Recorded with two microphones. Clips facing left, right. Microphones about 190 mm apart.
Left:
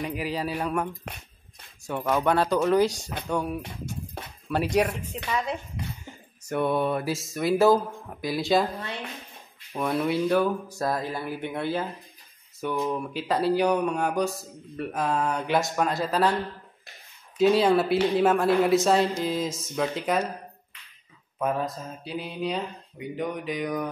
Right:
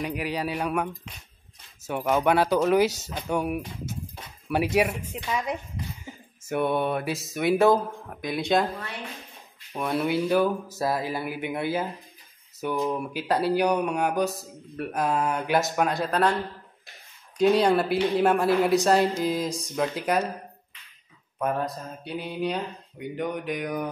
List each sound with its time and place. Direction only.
0.0 s a man's voice: centre (ahead or behind)
1.9 s speech: 10° right (ahead or behind)
6.1 s a sound: 5° right (ahead or behind)
6.4 s a man's voice: 5° right (ahead or behind)
9.8 s a man's voice: 5° right (ahead or behind)
17.4 s a man's voice: centre (ahead or behind)
21.4 s a man's voice: centre (ahead or behind)